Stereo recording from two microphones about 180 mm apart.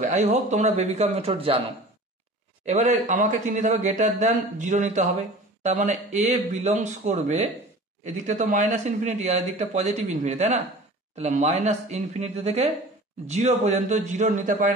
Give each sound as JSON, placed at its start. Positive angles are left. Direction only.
{"t": 0.0, "sound": "speech", "side_deg": -40}
{"t": 2.6, "sound": "speech", "side_deg": -40}